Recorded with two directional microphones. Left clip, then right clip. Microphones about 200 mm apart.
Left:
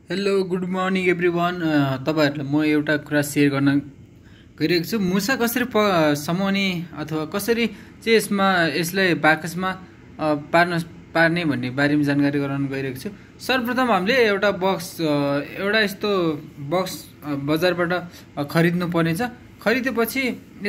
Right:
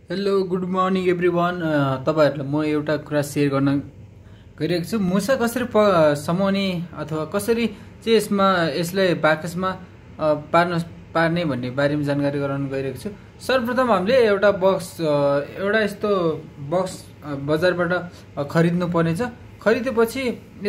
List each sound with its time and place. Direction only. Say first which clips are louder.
0.1 s speech: even; 5° left (ahead or behind)